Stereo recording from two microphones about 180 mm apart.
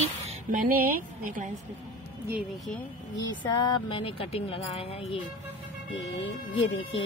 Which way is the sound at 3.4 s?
25° left (ahead or behind).